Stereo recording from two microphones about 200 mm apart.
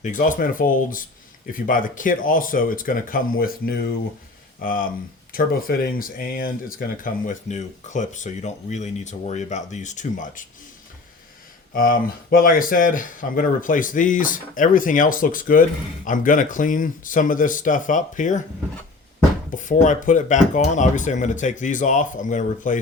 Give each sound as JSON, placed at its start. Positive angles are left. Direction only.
{"t": 0.0, "sound": "speech", "side_deg": 40}
{"t": 11.7, "sound": "speech", "side_deg": 45}
{"t": 19.5, "sound": "speech", "side_deg": 40}